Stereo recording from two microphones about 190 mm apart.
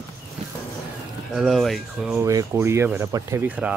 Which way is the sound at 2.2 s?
15° right (ahead or behind).